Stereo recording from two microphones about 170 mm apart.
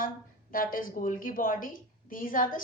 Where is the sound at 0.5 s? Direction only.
55° left (ahead or behind).